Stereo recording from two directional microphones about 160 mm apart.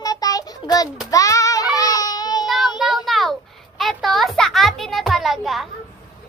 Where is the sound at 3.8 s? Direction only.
Centre (ahead or behind).